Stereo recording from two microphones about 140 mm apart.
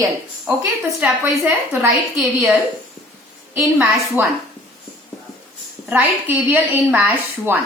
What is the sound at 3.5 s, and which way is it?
Speech, 15° right (ahead or behind).